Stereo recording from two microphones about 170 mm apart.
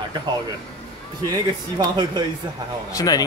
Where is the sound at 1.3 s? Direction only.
25° right (ahead or behind).